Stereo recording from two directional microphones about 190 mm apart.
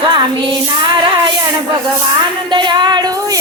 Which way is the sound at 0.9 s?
25° right (ahead or behind).